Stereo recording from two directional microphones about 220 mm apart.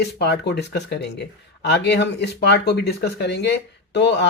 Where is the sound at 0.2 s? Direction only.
50° left (ahead or behind).